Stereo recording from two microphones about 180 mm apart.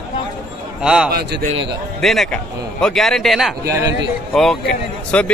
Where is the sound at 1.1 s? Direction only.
60° right (ahead or behind).